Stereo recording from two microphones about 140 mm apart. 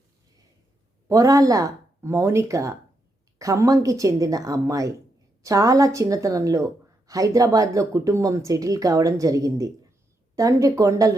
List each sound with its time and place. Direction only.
1.0 s speech: 25° right (ahead or behind)